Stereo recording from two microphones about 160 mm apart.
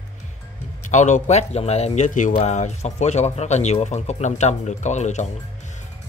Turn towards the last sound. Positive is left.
turn(degrees=45)  # may be behind; listen again after turning